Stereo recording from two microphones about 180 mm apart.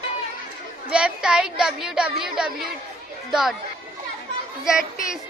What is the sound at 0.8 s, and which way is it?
A woman's voice, 5° right (ahead or behind).